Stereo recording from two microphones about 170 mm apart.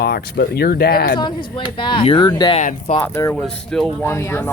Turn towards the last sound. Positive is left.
turn(degrees=0)  # may be behind; listen again after turning